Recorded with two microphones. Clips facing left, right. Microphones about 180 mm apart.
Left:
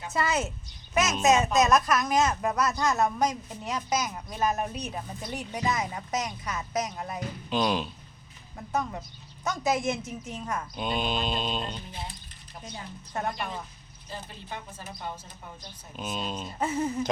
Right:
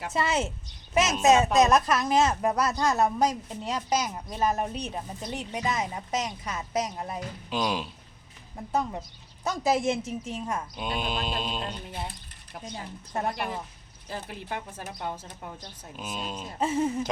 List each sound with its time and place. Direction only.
0.1 s speech: 25° right (ahead or behind)
7.5 s mantra: 5° right (ahead or behind)
8.5 s speech: 25° right (ahead or behind)
10.8 s mantra: 5° right (ahead or behind)
11.9 s speech: 60° right (ahead or behind)
13.4 s speech: 10° right (ahead or behind)
14.1 s a woman's voice: 70° right (ahead or behind)
16.0 s mantra: 5° right (ahead or behind)
16.6 s speech: 25° right (ahead or behind)